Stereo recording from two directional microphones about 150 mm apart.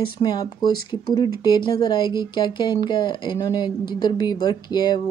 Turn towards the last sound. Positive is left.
turn(degrees=25)  # may be behind; listen again after turning